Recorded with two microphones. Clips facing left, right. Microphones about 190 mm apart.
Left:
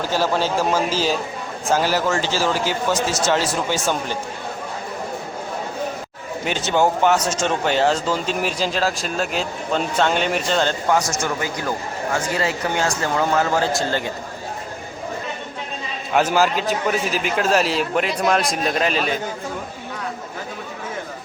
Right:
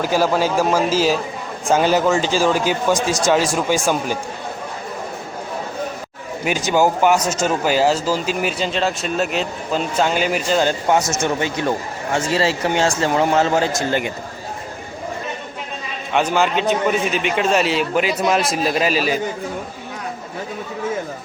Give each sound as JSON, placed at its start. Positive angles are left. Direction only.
{"t": 0.0, "sound": "speech", "side_deg": -10}
{"t": 1.6, "sound": "speech", "side_deg": -20}
{"t": 6.7, "sound": "speech", "side_deg": -10}
{"t": 10.8, "sound": "speech", "side_deg": -25}
{"t": 16.1, "sound": "speech", "side_deg": 5}